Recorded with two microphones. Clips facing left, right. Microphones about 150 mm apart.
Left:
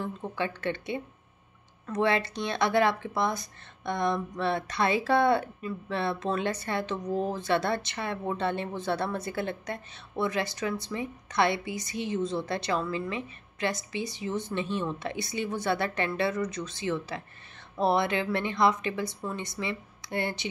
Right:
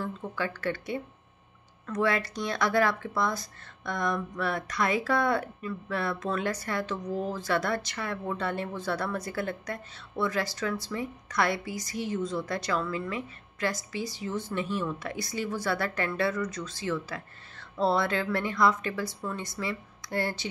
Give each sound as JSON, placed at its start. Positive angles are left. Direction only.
{"t": 0.0, "sound": "speech", "side_deg": 20}